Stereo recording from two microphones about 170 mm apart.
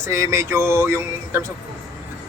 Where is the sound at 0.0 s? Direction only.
15° right (ahead or behind).